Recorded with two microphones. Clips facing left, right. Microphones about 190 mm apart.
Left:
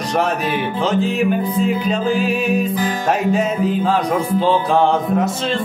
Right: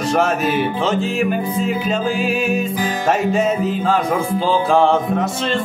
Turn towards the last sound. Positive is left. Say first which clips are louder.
# left 1 dB
turn(degrees=0)  # may be behind; listen again after turning